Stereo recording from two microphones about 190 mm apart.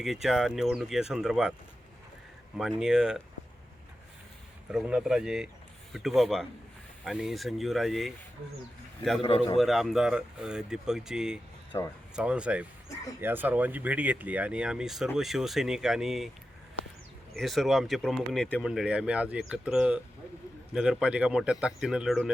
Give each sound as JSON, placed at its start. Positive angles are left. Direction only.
{"t": 0.0, "sound": "speech", "side_deg": 0}
{"t": 2.6, "sound": "speech", "side_deg": 0}
{"t": 4.7, "sound": "speech", "side_deg": -5}
{"t": 9.6, "sound": "speech", "side_deg": 0}
{"t": 11.7, "sound": "speech", "side_deg": 20}
{"t": 12.1, "sound": "speech", "side_deg": -5}
{"t": 17.3, "sound": "speech", "side_deg": 0}